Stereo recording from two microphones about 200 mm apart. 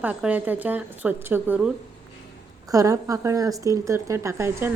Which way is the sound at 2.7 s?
15° right (ahead or behind).